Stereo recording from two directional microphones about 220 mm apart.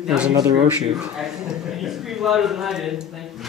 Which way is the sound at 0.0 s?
5° right (ahead or behind).